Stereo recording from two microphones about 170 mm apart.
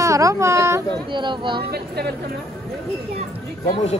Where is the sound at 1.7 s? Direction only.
70° right (ahead or behind).